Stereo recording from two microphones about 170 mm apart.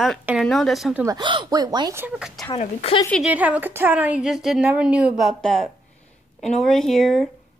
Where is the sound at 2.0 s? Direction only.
5° right (ahead or behind).